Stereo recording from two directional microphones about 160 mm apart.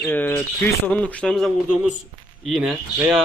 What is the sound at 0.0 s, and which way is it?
Speech, 10° left (ahead or behind).